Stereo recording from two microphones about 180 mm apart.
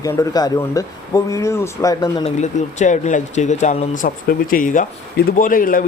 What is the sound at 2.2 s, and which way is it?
Speech, 40° left (ahead or behind).